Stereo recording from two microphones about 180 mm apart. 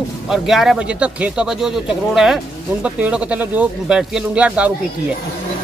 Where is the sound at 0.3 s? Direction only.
Centre (ahead or behind).